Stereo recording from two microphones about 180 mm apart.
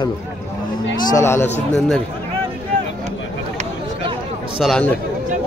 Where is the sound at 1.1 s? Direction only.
15° left (ahead or behind).